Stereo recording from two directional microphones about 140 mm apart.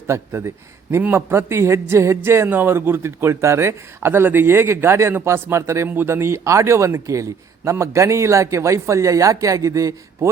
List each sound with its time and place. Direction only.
0.1 s a man's voice: 20° right (ahead or behind)